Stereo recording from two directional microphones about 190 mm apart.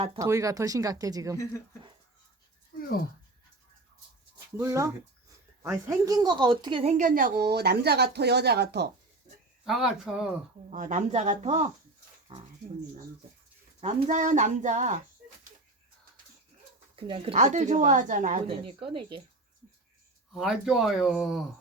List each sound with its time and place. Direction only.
0.2 s speech: 15° right (ahead or behind)
4.5 s a woman's voice: 15° right (ahead or behind)
6.9 s speech: 45° right (ahead or behind); by 8.9 s 60° right (ahead or behind)
9.6 s speech: centre (ahead or behind)
10.7 s speech: 40° right (ahead or behind)
13.8 s speech: 40° right (ahead or behind)
16.9 s speech: 30° right (ahead or behind)
18.4 s speech: 30° right (ahead or behind)
20.3 s speech: centre (ahead or behind)